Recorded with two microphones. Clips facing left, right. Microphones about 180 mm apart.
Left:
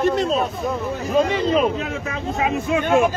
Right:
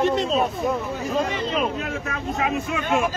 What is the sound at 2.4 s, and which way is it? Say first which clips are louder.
Speech: left 5 dB; 25° left (ahead or behind).